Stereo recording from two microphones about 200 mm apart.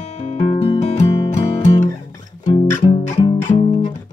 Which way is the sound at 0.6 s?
30° left (ahead or behind).